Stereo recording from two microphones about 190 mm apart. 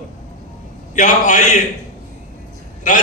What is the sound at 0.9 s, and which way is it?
Speech, 40° left (ahead or behind).